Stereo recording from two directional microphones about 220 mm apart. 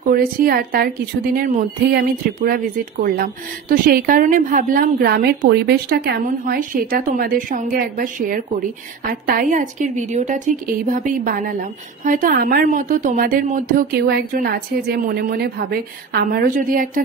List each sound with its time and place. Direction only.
0.1 s a woman's voice: 40° right (ahead or behind)